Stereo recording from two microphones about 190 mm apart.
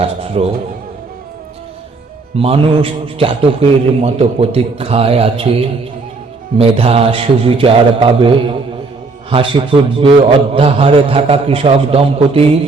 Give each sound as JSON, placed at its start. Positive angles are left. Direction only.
{"t": 0.0, "sound": "a man's voice", "side_deg": -30}
{"t": 2.3, "sound": "a man's voice", "side_deg": -30}